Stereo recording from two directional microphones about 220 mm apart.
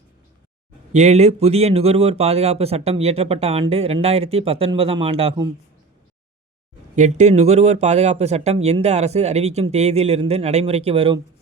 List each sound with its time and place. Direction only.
0.9 s speech: 30° right (ahead or behind)
6.9 s speech: 30° right (ahead or behind)